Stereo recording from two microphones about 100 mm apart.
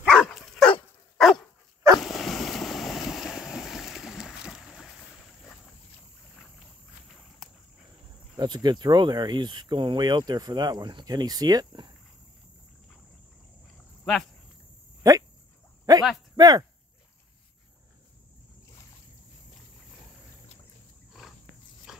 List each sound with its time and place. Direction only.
0.1 s dog: centre (ahead or behind)
2.0 s boat: centre (ahead or behind)
7.4 s a sound: centre (ahead or behind)
8.4 s speech: 45° right (ahead or behind)
15.0 s insect: 35° right (ahead or behind)
15.9 s a sound: 40° right (ahead or behind)